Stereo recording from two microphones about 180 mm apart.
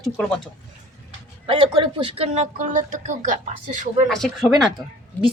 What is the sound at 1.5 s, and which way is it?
Speech, 30° right (ahead or behind).